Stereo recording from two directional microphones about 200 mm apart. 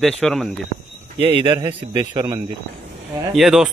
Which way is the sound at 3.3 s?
Centre (ahead or behind).